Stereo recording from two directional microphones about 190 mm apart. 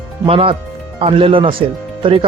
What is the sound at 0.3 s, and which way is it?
Speech, 30° right (ahead or behind).